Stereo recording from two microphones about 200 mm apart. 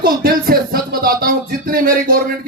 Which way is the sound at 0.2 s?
45° right (ahead or behind).